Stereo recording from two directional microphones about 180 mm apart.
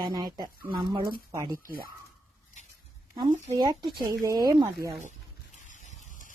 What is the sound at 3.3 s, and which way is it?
Speech, 40° right (ahead or behind).